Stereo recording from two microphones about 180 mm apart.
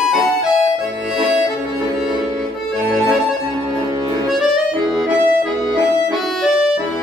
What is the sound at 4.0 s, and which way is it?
Accordion, 20° right (ahead or behind).